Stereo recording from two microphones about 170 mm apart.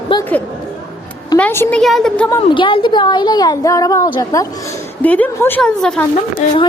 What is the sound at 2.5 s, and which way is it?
A woman's voice, 30° left (ahead or behind).